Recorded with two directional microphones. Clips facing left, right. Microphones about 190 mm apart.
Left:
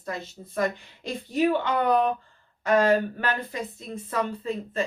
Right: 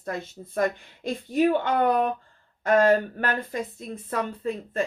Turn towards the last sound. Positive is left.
turn(degrees=-55)  # may be behind; listen again after turning